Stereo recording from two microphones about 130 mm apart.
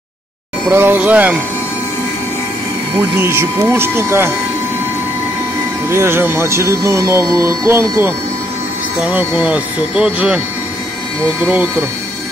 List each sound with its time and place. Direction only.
0.7 s speech: 15° right (ahead or behind)
3.0 s speech: 15° right (ahead or behind)
5.9 s speech: 20° right (ahead or behind)